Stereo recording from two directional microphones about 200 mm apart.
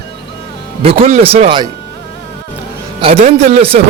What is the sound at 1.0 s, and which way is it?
Speech, 30° right (ahead or behind).